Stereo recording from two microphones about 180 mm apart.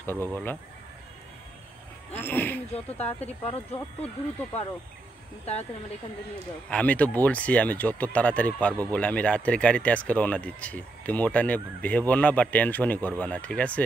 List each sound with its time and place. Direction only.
0.0 s speech: 10° left (ahead or behind)
2.1 s speech: 10° left (ahead or behind)
5.4 s speech: 35° left (ahead or behind)
6.7 s speech: 10° left (ahead or behind)